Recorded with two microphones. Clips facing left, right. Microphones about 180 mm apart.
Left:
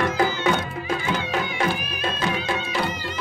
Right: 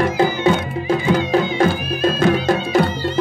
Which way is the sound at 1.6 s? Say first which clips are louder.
Right 8 dB; 40° right (ahead or behind).